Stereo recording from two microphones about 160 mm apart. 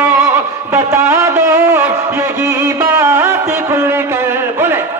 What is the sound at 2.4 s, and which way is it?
Music, 20° right (ahead or behind).